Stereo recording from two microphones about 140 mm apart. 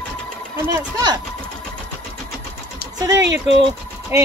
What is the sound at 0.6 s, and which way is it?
Speech, 25° right (ahead or behind).